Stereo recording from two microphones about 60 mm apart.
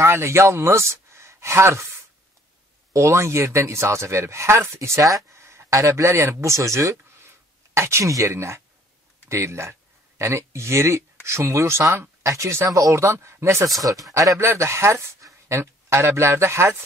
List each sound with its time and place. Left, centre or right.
0.0 s speech: right
2.9 s speech: right
14.1 s speech: right
14.5 s speech: right